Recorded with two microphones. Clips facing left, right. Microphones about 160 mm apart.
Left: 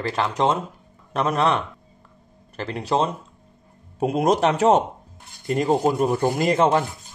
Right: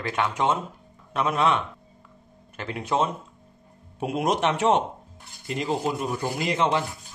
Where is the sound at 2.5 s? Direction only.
35° left (ahead or behind).